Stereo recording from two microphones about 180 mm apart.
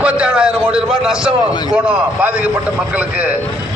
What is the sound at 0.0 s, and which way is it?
A man's voice, 5° right (ahead or behind).